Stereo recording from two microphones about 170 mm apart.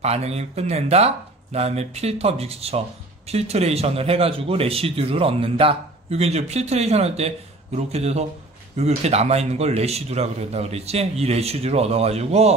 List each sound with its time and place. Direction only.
0.0 s a man's voice: 40° right (ahead or behind)